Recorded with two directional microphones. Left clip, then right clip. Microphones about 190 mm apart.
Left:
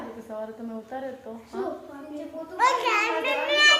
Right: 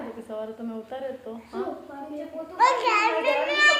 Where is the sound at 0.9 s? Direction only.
10° right (ahead or behind).